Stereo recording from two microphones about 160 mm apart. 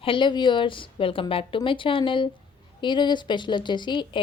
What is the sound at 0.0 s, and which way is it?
A woman's voice, 30° left (ahead or behind).